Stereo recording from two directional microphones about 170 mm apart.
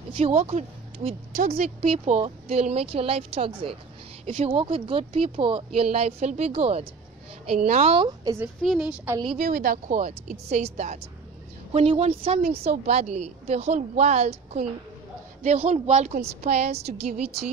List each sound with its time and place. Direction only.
0.2 s a woman's voice: 40° right (ahead or behind)
8.6 s a woman's voice: 5° right (ahead or behind)
9.4 s a woman's voice: 55° right (ahead or behind); by 17.5 s 35° right (ahead or behind)